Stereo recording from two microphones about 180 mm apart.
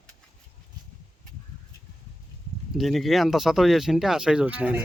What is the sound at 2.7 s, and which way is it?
Speech, centre (ahead or behind).